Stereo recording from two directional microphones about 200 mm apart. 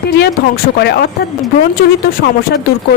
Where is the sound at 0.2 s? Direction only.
55° left (ahead or behind).